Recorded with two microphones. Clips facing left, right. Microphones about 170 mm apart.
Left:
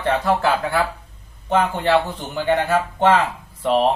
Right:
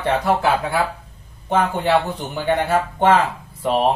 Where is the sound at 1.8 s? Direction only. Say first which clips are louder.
Even; 10° right (ahead or behind).